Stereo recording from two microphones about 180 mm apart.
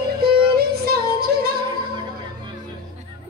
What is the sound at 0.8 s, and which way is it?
Music, 60° right (ahead or behind).